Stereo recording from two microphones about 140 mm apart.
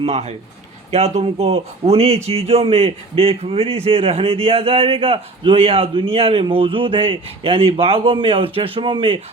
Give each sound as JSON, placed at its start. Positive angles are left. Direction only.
{"t": 0.0, "sound": "a man's voice", "side_deg": -50}